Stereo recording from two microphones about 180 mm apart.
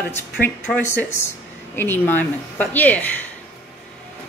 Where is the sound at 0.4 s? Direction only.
10° left (ahead or behind).